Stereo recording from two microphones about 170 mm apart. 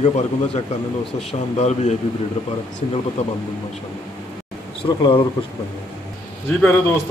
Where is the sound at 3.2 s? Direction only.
40° left (ahead or behind).